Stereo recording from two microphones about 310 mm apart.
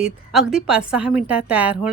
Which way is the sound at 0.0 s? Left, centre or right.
Centre.